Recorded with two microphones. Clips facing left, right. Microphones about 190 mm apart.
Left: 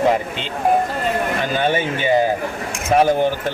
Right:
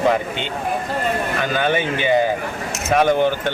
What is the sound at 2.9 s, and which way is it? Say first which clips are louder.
Speech: left 1 dB; 30° left (ahead or behind).